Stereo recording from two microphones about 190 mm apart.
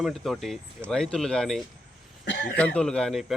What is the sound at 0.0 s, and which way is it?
A man's voice, centre (ahead or behind).